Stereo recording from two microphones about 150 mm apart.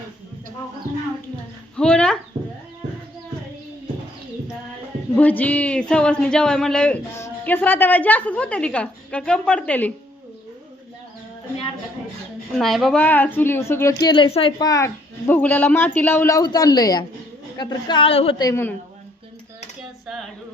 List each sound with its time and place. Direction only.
1.7 s a sound: 5° left (ahead or behind)
5.1 s speech: 10° left (ahead or behind)
12.5 s speech: centre (ahead or behind); by 14.5 s 40° left (ahead or behind)
14.6 s a woman's voice: 20° left (ahead or behind); by 18.3 s 40° left (ahead or behind)
18.3 s a woman's voice: 20° left (ahead or behind)